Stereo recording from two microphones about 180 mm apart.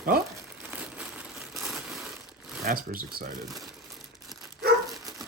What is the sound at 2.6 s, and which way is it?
Speech, 55° right (ahead or behind).